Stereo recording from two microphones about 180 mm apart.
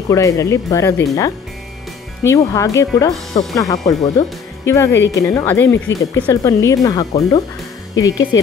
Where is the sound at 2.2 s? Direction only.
15° left (ahead or behind).